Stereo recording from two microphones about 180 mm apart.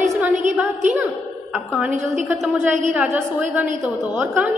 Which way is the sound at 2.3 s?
5° right (ahead or behind).